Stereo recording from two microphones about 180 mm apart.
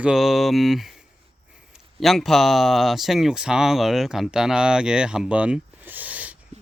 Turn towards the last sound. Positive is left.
turn(degrees=-10)  # may be behind; listen again after turning